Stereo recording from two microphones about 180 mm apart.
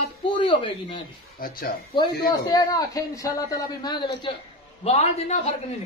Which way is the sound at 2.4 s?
20° left (ahead or behind).